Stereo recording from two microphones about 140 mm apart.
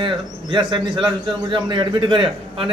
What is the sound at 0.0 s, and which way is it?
A man's voice, 35° right (ahead or behind).